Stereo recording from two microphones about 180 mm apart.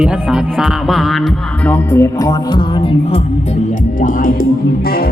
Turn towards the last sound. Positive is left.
turn(degrees=50)  # may be behind; listen again after turning